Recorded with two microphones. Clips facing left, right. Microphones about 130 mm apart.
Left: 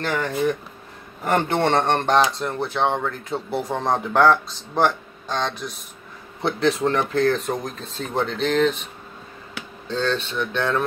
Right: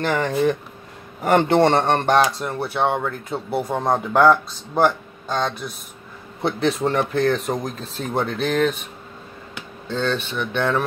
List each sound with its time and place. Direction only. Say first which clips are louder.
0.0 s a man's voice: right 3 dB; 20° right (ahead or behind)
1.6 s speech: right 3 dB; 5° right (ahead or behind)
9.8 s speech: even; 5° right (ahead or behind)